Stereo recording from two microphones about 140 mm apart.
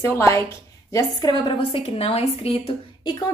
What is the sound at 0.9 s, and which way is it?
A woman's voice, 30° left (ahead or behind).